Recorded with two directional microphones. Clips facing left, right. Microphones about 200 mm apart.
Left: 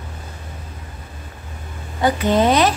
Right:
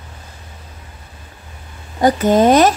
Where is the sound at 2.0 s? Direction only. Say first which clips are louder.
Right 4 dB; 45° right (ahead or behind).